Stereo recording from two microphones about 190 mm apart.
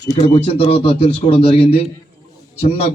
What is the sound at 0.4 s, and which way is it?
A man's voice, 30° left (ahead or behind).